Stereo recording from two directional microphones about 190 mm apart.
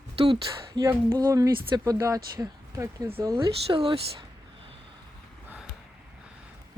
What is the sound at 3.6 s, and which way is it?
Speech, 30° right (ahead or behind).